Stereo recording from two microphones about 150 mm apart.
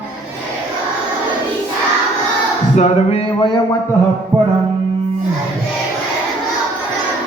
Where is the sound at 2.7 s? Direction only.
50° left (ahead or behind).